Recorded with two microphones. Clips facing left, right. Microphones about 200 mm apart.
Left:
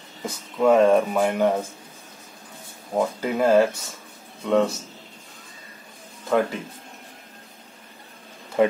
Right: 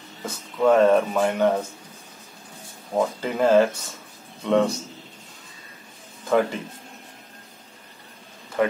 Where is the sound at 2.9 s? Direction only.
5° left (ahead or behind).